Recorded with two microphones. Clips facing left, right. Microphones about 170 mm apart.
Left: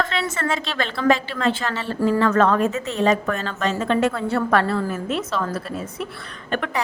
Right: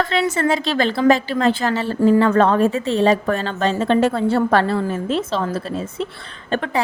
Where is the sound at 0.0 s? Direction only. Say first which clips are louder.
Right 5 dB; 35° right (ahead or behind).